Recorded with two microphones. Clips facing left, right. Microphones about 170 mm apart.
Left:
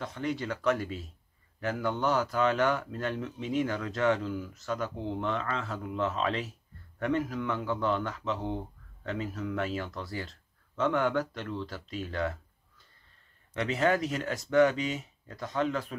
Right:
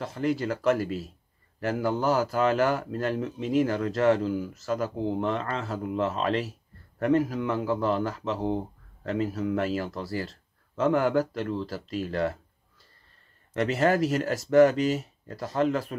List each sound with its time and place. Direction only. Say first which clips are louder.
0.0 s speech: right 6 dB; 35° right (ahead or behind)
0.8 s speech: right 6 dB; 5° right (ahead or behind)
1.6 s speech: right 4 dB; 35° right (ahead or behind)
13.7 s speech: right 4 dB; 35° right (ahead or behind)
14.8 s speech: right 7 dB; 5° right (ahead or behind)
15.2 s speech: right 4 dB; 35° right (ahead or behind)